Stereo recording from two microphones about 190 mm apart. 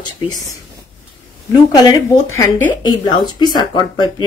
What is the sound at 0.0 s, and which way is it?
Speech, 20° left (ahead or behind).